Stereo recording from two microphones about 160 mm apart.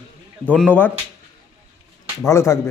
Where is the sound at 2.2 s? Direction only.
15° left (ahead or behind).